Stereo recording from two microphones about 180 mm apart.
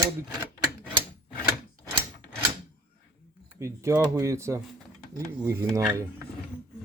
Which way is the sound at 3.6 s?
15° right (ahead or behind).